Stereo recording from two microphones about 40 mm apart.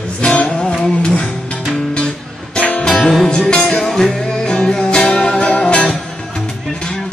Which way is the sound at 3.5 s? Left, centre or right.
Centre.